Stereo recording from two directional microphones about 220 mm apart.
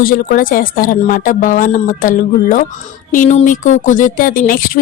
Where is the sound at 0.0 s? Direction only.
40° left (ahead or behind).